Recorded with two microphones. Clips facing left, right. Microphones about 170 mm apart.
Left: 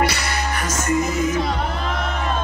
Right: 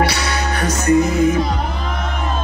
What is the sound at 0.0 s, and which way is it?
Music, 65° right (ahead or behind).